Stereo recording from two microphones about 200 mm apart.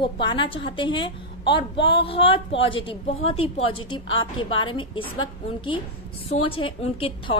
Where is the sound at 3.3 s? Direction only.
90° left.